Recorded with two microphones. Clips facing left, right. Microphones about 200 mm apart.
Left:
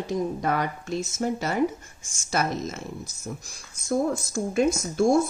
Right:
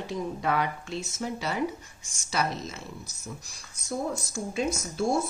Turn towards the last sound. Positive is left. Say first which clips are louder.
# left 6 dB
turn(degrees=50)  # may be behind; listen again after turning